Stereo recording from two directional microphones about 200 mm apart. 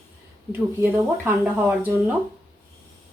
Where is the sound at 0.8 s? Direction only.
10° right (ahead or behind).